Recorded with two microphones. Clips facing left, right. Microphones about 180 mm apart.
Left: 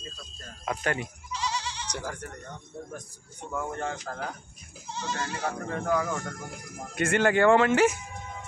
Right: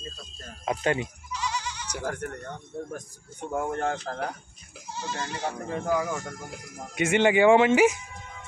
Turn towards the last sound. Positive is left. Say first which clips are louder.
# right 2 dB
turn(degrees=-15)  # may be behind; listen again after turning